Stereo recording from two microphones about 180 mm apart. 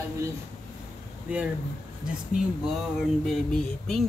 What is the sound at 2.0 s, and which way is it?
Mantra, 5° right (ahead or behind).